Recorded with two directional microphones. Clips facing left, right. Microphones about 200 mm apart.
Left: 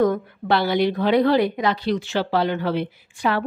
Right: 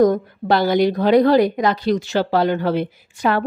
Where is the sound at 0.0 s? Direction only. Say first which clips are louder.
Right 4 dB; 40° right (ahead or behind).